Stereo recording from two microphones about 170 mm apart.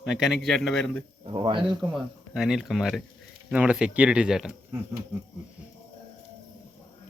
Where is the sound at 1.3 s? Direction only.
30° right (ahead or behind).